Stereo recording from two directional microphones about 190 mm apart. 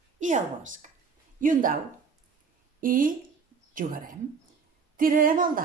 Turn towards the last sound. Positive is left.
turn(degrees=-45)  # may be behind; listen again after turning